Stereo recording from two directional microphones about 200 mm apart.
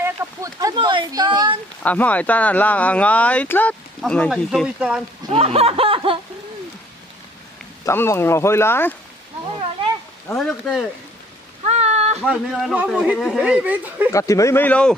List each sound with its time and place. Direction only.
0.0 s speech: 15° right (ahead or behind)
1.8 s speech: 5° left (ahead or behind)
5.3 s speech: 30° right (ahead or behind)
7.8 s speech: 15° left (ahead or behind)
10.2 s stir: 5° left (ahead or behind)
11.6 s a sound: 30° right (ahead or behind)
12.2 s speech: 5° right (ahead or behind)
14.1 s speech: 15° left (ahead or behind)